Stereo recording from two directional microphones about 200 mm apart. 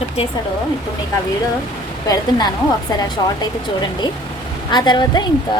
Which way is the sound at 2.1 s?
20° left (ahead or behind).